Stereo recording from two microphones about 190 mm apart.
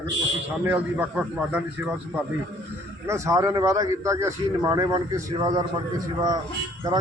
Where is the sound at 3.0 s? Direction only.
15° right (ahead or behind).